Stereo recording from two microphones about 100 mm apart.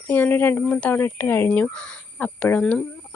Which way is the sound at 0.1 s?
20° left (ahead or behind).